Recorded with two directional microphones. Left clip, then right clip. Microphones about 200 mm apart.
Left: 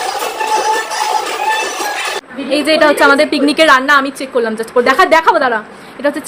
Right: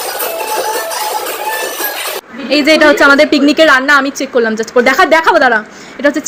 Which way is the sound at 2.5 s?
20° right (ahead or behind).